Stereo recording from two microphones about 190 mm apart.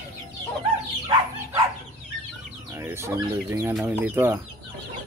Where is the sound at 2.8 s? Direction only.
15° right (ahead or behind).